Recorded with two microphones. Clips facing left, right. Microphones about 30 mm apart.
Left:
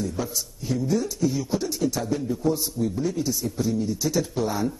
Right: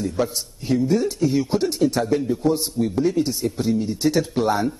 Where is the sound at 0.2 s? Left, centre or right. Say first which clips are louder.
Right 6 dB; right.